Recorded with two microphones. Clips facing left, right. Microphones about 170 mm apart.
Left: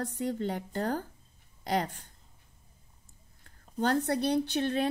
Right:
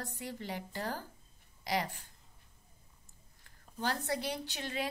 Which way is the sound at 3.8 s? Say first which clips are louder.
Left 8 dB; 60° left (ahead or behind).